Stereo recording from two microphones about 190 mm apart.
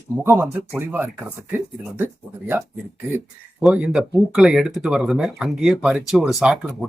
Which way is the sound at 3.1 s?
5° right (ahead or behind).